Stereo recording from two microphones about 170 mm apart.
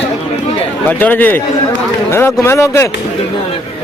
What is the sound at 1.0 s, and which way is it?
Speech, 10° left (ahead or behind).